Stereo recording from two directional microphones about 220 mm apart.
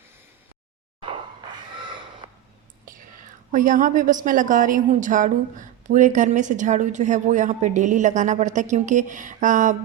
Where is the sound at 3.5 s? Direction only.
35° right (ahead or behind).